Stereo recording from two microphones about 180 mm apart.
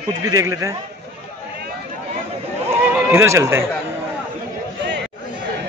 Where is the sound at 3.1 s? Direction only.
15° right (ahead or behind).